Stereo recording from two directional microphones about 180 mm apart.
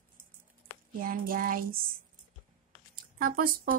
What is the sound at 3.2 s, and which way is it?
Speech, 55° right (ahead or behind).